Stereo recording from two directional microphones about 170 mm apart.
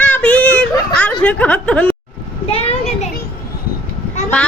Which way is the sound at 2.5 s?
35° left (ahead or behind).